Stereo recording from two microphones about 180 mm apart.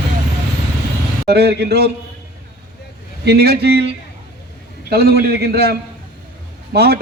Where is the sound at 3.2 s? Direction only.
60° right (ahead or behind).